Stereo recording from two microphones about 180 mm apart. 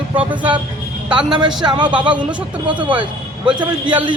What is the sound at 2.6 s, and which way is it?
A man's voice, 25° right (ahead or behind).